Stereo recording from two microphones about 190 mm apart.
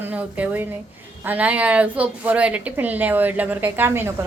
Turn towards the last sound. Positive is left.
turn(degrees=-15)  # may be behind; listen again after turning